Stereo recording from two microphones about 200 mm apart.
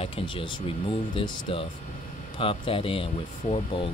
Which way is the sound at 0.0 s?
25° left (ahead or behind).